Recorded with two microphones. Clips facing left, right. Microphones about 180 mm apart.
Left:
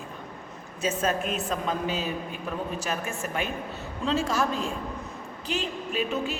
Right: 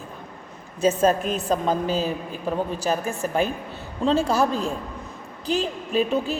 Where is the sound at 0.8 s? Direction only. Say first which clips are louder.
Right 7 dB; 35° right (ahead or behind).